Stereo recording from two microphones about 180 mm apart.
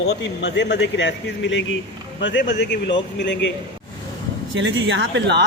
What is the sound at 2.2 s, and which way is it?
A man's voice, 80° left.